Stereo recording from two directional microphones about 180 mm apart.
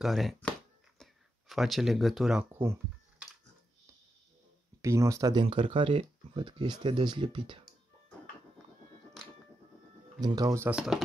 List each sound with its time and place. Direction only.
0.0 s chopping: centre (ahead or behind)
1.5 s speech: centre (ahead or behind)
4.8 s speech: 15° right (ahead or behind)
10.2 s speech: 20° right (ahead or behind)